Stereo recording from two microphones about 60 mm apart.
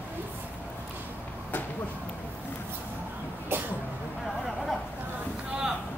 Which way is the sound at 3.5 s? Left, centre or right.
Right.